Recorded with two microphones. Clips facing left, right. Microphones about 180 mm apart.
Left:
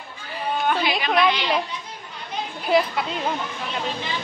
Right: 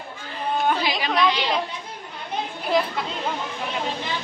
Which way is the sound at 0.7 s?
35° right (ahead or behind).